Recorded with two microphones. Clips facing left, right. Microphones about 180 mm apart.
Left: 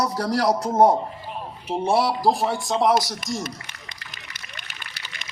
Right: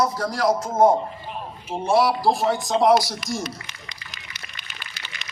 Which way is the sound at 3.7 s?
55° left (ahead or behind).